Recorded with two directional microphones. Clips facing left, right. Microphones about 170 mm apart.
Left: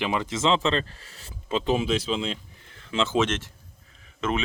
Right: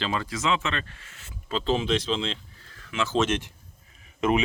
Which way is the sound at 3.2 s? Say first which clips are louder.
Right 3 dB; 15° right (ahead or behind).